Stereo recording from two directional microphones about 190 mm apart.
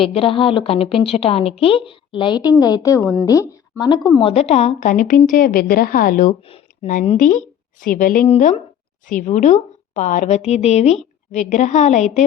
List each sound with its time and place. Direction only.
0.0 s a woman's voice: 30° left (ahead or behind); by 6.3 s 45° left (ahead or behind)
6.5 s a woman's voice: 35° left (ahead or behind)